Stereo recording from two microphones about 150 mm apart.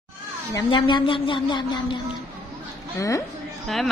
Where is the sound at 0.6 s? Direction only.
35° left (ahead or behind).